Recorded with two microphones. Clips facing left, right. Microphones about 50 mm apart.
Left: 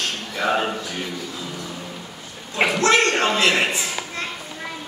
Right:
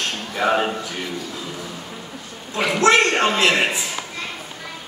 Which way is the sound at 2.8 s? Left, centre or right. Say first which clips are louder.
Right 4 dB; centre.